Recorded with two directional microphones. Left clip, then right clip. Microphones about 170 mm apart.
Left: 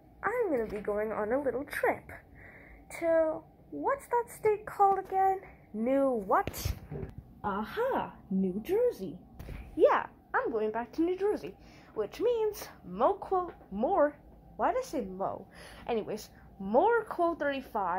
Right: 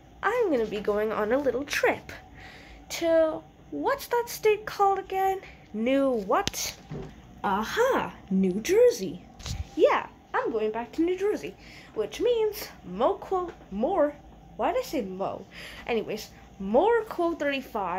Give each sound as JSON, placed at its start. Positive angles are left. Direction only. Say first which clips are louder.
{"t": 0.2, "sound": "speech", "louder": "right 5 dB", "side_deg": -30}
{"t": 7.4, "sound": "speech", "louder": "right 7 dB", "side_deg": -15}
{"t": 9.8, "sound": "a woman's voice", "louder": "right 3 dB", "side_deg": 0}